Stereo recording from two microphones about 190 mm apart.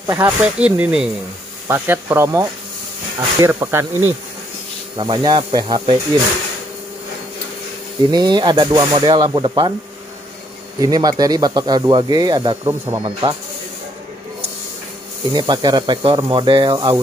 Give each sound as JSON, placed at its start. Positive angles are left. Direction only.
{"t": 0.0, "sound": "speech", "side_deg": -10}
{"t": 4.9, "sound": "speech", "side_deg": -25}
{"t": 8.1, "sound": "speech", "side_deg": -20}
{"t": 10.8, "sound": "speech", "side_deg": -20}
{"t": 15.3, "sound": "speech", "side_deg": -20}